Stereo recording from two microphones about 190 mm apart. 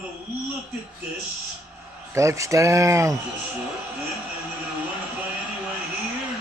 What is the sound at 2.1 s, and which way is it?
Speech, 15° right (ahead or behind).